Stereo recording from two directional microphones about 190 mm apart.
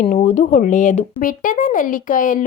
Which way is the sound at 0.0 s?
35° left (ahead or behind).